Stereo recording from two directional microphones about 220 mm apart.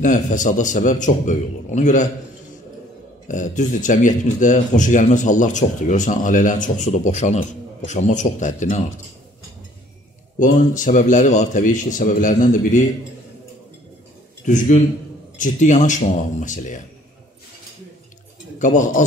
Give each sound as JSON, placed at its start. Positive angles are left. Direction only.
{"t": 0.0, "sound": "speech", "side_deg": 35}
{"t": 3.3, "sound": "speech", "side_deg": 35}
{"t": 10.4, "sound": "speech", "side_deg": 35}
{"t": 14.4, "sound": "a man's voice", "side_deg": 35}
{"t": 18.6, "sound": "speech", "side_deg": 35}